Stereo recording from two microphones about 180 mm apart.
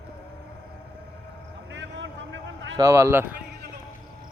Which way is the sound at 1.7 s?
85° right.